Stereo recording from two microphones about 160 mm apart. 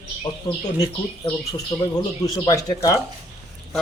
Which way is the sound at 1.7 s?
30° left (ahead or behind).